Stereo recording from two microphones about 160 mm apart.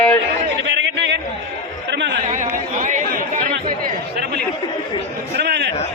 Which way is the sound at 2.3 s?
50° right (ahead or behind).